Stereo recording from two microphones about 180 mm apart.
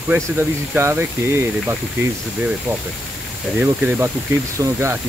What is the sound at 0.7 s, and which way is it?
Speech, 10° right (ahead or behind).